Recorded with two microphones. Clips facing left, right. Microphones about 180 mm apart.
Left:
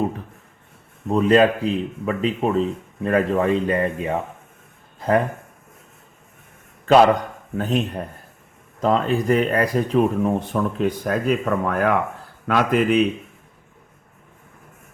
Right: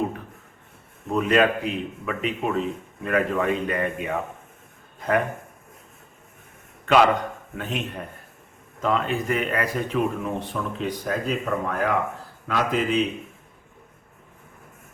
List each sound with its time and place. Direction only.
1.1 s a man's voice: 30° left (ahead or behind)
6.8 s a man's voice: 35° left (ahead or behind)
10.5 s speech: 50° left (ahead or behind)